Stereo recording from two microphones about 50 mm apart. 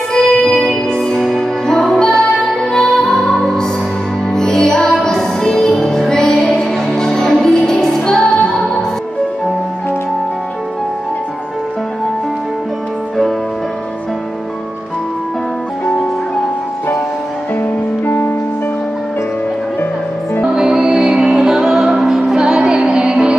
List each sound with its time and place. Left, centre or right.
0.2 s music: centre
1.1 s music: centre
1.7 s music: centre
17.6 s music: left
20.4 s music: centre